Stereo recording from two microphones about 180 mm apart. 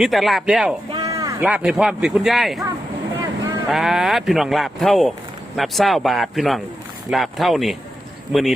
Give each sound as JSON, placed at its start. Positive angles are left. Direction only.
{"t": 0.0, "sound": "speech", "side_deg": 0}
{"t": 0.9, "sound": "a sound", "side_deg": -20}
{"t": 1.4, "sound": "speech", "side_deg": -5}
{"t": 3.7, "sound": "speech", "side_deg": 0}